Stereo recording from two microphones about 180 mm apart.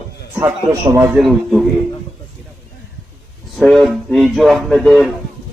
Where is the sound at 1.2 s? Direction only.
Centre (ahead or behind).